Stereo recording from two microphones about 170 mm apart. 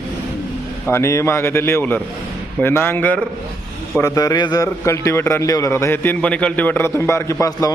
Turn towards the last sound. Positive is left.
turn(degrees=20)  # may be behind; listen again after turning